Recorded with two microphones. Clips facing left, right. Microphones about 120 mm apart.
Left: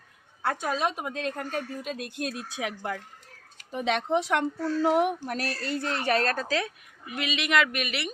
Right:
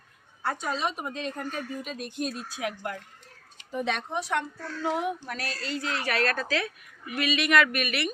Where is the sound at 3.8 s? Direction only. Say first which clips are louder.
Left 5 dB; 70° left (ahead or behind); by 6.0 s 55° left (ahead or behind).